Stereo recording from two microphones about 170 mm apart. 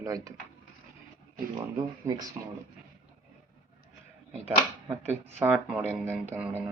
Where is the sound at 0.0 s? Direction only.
20° right (ahead or behind).